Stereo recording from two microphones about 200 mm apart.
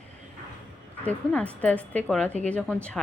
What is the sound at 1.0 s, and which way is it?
A woman's voice, 5° left (ahead or behind).